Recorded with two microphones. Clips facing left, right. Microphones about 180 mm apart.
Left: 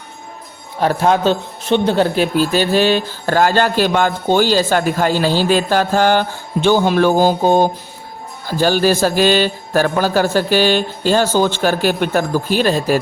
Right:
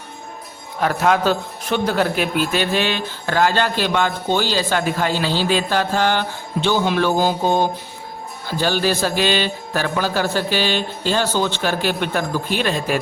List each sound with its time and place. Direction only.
0.8 s a man's voice: 30° left (ahead or behind)